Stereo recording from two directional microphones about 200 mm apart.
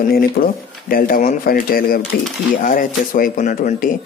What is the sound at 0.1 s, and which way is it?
A man's voice, 45° left (ahead or behind).